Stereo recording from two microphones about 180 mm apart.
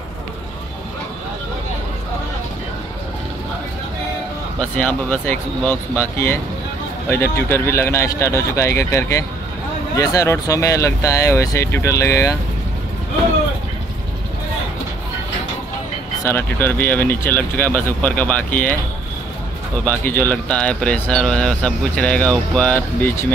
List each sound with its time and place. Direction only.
4.6 s speech: 10° left (ahead or behind)
16.3 s speech: 10° left (ahead or behind)
19.8 s speech: 10° left (ahead or behind)